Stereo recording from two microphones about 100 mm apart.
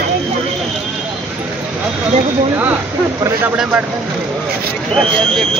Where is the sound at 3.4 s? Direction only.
10° right (ahead or behind).